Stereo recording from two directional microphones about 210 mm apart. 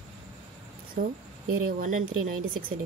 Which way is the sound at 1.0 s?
40° right (ahead or behind).